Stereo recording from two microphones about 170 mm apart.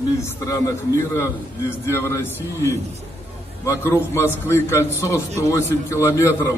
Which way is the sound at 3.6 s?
15° left (ahead or behind).